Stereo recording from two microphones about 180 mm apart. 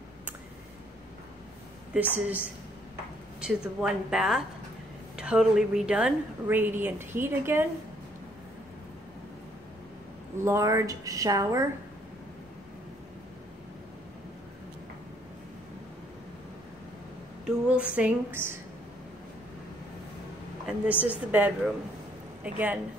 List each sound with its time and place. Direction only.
2.1 s a woman's voice: 10° right (ahead or behind)
10.4 s a woman's voice: 15° right (ahead or behind)
17.5 s a woman's voice: 5° right (ahead or behind)
20.8 s a woman's voice: 5° right (ahead or behind)